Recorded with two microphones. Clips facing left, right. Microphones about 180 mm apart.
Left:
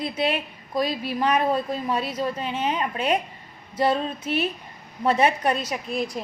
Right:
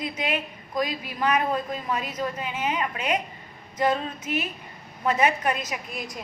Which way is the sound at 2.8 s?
30° left (ahead or behind).